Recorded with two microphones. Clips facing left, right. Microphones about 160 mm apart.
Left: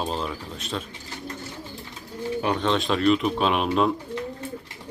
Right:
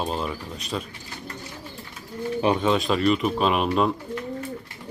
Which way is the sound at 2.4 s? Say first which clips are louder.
Right 4 dB; 20° right (ahead or behind).